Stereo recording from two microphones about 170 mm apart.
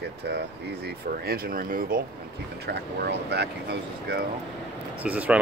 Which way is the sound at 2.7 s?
80° right.